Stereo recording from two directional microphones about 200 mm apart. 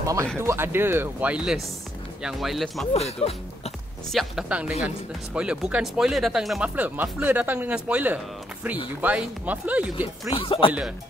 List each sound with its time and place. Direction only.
0.0 s speech: 15° right (ahead or behind); by 2.9 s centre (ahead or behind)
2.9 s speech: 30° left (ahead or behind)
4.1 s speech: centre (ahead or behind)
10.3 s speech: 25° left (ahead or behind)